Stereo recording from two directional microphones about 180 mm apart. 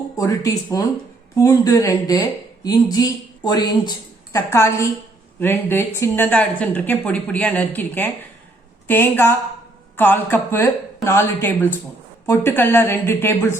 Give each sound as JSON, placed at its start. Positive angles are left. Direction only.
{"t": 0.2, "sound": "speech", "side_deg": 15}